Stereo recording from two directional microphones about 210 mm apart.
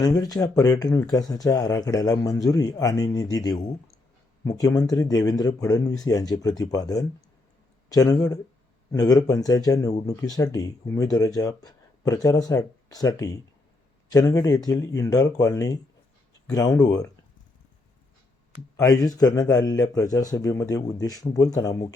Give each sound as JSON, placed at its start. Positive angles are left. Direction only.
{"t": 0.0, "sound": "speech", "side_deg": 15}
{"t": 18.8, "sound": "speech", "side_deg": 15}